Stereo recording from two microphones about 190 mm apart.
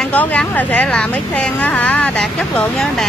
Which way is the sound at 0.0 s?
10° left (ahead or behind).